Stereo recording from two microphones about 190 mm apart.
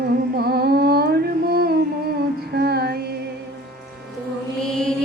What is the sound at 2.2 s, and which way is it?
Child singing, 55° right (ahead or behind).